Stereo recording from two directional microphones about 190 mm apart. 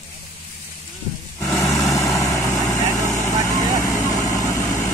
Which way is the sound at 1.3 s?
10° left (ahead or behind).